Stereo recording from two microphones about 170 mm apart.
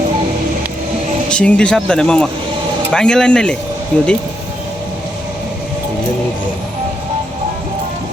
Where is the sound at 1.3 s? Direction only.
5° left (ahead or behind).